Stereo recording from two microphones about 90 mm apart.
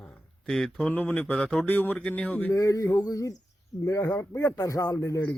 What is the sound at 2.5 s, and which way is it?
Speech, 40° left (ahead or behind).